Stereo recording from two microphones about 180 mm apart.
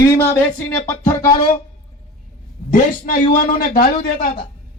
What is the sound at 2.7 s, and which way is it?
A man's voice, 50° left (ahead or behind).